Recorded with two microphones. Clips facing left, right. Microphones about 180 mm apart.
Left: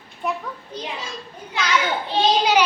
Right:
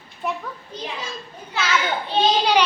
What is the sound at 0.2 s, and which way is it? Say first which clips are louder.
Speech: left 1 dB; centre (ahead or behind).